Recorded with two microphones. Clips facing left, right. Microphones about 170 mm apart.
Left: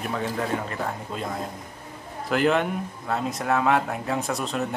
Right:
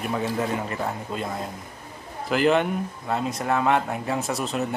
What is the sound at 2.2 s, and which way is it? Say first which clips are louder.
A man's voice: right 1 dB; centre (ahead or behind).